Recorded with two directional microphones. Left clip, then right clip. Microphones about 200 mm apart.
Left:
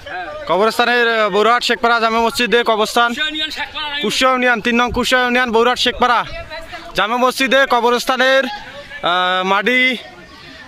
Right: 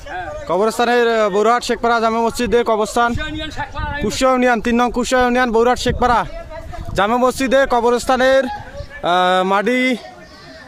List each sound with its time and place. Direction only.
0.4 s speech: centre (ahead or behind)
3.2 s speech: 40° right (ahead or behind)
4.0 s speech: centre (ahead or behind)